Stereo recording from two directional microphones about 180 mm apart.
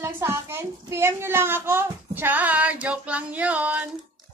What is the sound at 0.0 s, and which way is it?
A woman's voice, 15° right (ahead or behind).